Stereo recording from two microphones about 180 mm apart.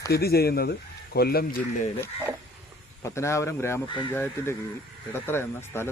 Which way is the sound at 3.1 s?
15° left (ahead or behind).